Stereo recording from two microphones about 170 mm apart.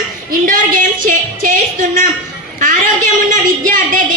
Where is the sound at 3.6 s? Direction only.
55° right (ahead or behind).